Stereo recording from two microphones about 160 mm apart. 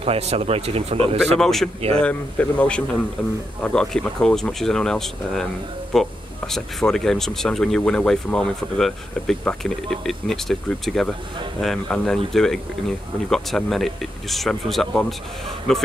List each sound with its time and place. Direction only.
0.0 s speech: 40° right (ahead or behind)
1.4 s speech: centre (ahead or behind)